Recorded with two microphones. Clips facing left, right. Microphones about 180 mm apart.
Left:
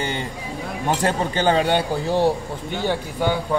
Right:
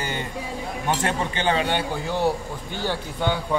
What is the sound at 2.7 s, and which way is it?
Speech, 15° left (ahead or behind).